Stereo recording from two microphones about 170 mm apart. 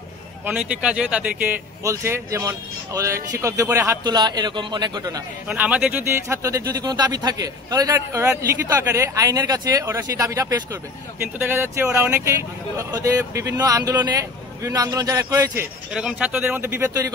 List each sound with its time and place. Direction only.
0.5 s speech: 10° right (ahead or behind); by 5.2 s 25° right (ahead or behind)
5.5 s speech: 5° right (ahead or behind)